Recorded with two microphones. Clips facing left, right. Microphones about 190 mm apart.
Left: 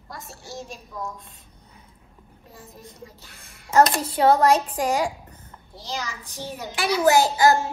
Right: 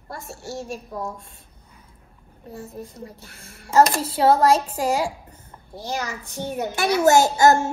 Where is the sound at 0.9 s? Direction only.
30° right (ahead or behind).